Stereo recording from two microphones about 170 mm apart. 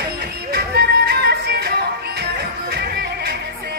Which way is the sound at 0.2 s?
70° right (ahead or behind).